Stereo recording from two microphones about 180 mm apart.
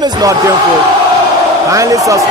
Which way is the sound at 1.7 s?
20° right (ahead or behind).